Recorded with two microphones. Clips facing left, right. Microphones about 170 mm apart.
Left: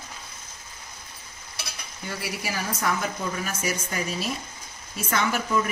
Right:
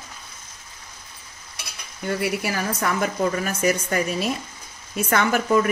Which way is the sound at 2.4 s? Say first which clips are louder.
Right 4 dB; 60° right (ahead or behind).